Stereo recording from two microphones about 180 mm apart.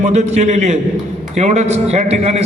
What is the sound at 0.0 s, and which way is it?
A man's voice, 40° right (ahead or behind).